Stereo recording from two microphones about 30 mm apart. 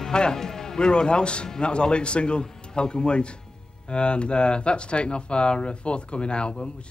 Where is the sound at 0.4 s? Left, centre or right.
Centre.